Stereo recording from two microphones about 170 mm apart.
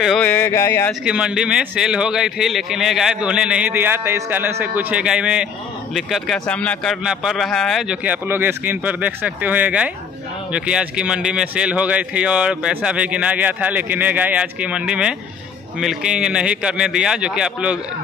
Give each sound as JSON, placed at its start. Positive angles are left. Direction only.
{"t": 0.0, "sound": "a man's voice", "side_deg": 0}
{"t": 0.3, "sound": "speech", "side_deg": 15}
{"t": 1.0, "sound": "a man's voice", "side_deg": -5}